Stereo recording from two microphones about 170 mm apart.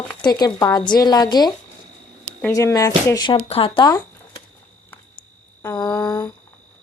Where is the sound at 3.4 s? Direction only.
35° left (ahead or behind).